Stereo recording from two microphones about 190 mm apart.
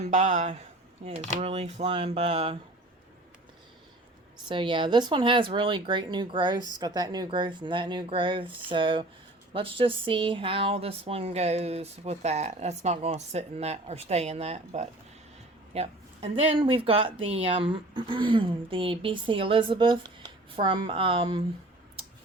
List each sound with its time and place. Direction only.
0.0 s speech: 35° right (ahead or behind)
4.4 s speech: 25° right (ahead or behind)